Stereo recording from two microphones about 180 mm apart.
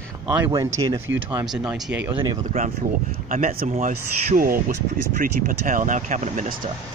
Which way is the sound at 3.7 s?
45° right (ahead or behind).